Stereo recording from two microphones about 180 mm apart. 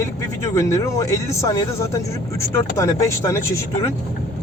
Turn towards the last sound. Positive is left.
turn(degrees=15)  # may be behind; listen again after turning